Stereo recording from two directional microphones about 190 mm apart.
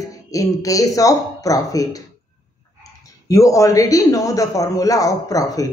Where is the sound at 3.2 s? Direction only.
15° left (ahead or behind).